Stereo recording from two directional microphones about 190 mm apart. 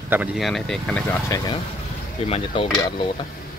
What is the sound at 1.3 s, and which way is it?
Dishes, 20° left (ahead or behind).